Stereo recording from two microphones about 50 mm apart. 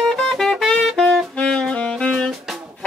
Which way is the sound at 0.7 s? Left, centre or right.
Centre.